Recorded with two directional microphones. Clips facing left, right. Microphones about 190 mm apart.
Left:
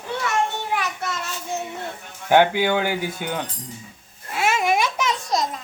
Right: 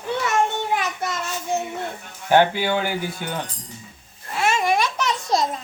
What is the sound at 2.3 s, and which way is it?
Speech, 15° left (ahead or behind).